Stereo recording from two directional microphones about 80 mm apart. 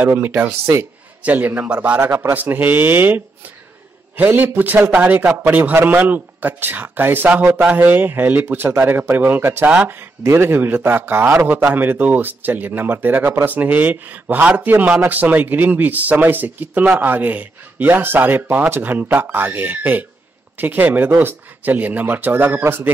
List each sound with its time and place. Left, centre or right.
0.0 s a man's voice: right
2.0 s speech: right
4.2 s speech: right